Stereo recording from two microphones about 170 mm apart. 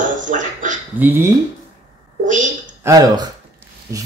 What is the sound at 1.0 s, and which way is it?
Speech, 10° right (ahead or behind).